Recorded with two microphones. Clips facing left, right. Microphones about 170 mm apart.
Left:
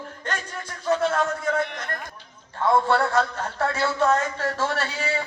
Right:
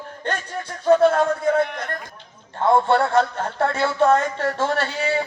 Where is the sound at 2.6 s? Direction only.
25° right (ahead or behind).